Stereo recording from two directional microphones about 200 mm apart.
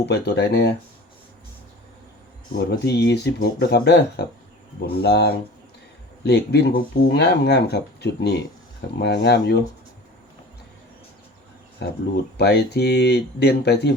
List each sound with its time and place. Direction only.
0.0 s speech: 55° left (ahead or behind)
2.6 s speech: 60° left (ahead or behind)
11.8 s speech: 55° left (ahead or behind)